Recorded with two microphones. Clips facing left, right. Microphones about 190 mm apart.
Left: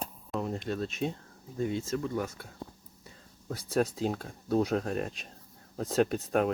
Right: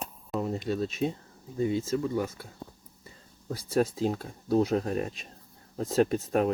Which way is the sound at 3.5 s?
Centre (ahead or behind).